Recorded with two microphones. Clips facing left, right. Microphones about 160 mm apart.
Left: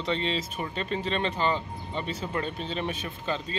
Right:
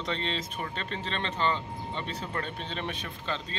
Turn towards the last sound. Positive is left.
turn(degrees=5)  # may be behind; listen again after turning